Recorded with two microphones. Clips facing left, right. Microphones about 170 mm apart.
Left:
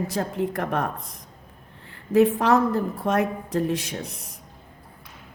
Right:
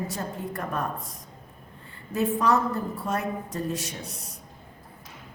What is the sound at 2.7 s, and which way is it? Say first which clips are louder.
A woman's voice: left 6 dB; 70° left (ahead or behind).